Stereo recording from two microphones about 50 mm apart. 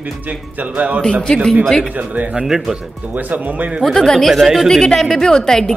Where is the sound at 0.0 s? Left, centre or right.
Right.